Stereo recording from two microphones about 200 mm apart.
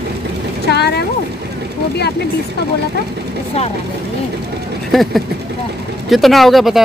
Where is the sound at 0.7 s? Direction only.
55° left (ahead or behind).